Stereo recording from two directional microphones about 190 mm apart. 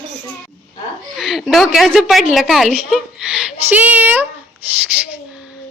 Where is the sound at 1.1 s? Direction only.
Centre (ahead or behind).